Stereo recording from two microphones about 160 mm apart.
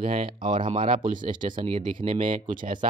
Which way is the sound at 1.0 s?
55° right (ahead or behind).